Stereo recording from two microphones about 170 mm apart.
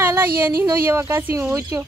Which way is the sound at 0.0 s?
10° right (ahead or behind).